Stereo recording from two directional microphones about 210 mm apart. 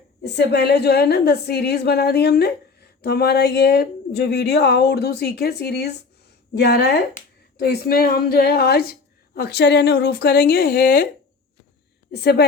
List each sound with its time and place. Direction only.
0.3 s a woman's voice: 50° left (ahead or behind)
12.1 s a woman's voice: 50° left (ahead or behind)